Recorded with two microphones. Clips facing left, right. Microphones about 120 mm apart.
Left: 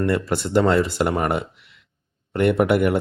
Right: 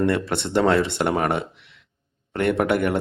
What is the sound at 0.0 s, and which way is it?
Speech, 5° left (ahead or behind).